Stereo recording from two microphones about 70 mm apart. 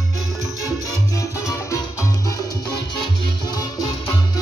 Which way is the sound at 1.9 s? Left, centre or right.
Left.